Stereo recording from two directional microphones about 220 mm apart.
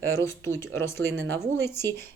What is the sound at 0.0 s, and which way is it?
Speech, 10° left (ahead or behind).